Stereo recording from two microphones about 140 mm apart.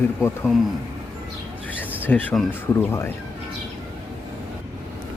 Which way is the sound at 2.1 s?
10° left (ahead or behind).